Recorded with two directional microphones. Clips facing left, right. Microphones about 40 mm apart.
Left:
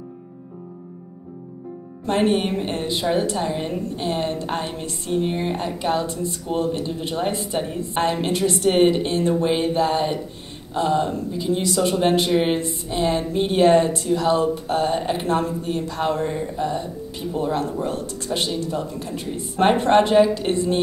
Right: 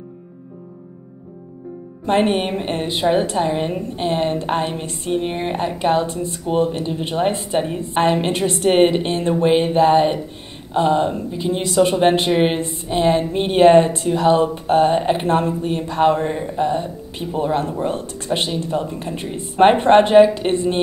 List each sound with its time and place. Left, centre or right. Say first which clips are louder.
2.0 s a woman's voice: right 2 dB; right